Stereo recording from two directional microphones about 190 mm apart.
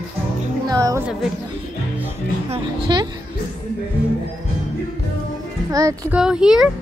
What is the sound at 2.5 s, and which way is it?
Speech, 25° right (ahead or behind).